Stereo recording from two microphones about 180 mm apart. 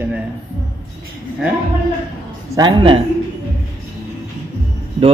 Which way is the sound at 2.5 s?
25° right (ahead or behind).